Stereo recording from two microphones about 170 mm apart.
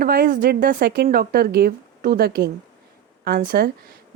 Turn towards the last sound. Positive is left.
turn(degrees=-60)  # may be behind; listen again after turning